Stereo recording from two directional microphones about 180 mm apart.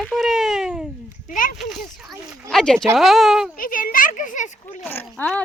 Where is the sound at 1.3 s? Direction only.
50° left (ahead or behind).